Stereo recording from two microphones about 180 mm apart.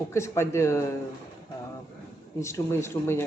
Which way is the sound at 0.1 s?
15° left (ahead or behind).